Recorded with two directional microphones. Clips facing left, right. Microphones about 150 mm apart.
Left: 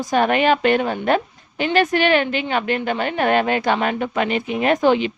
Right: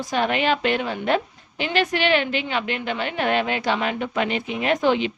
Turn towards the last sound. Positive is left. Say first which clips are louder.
# left 4 dB
turn(degrees=45)  # may be behind; listen again after turning